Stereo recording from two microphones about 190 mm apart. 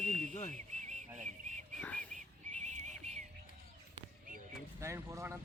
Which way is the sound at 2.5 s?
40° right (ahead or behind).